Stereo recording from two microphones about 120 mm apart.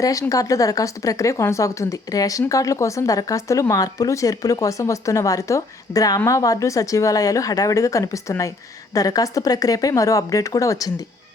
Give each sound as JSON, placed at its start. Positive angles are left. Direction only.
{"t": 0.0, "sound": "speech", "side_deg": 30}